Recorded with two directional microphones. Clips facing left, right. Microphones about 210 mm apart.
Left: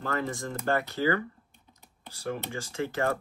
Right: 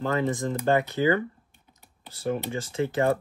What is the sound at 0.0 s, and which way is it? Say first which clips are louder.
Speech: right 6 dB; 20° right (ahead or behind).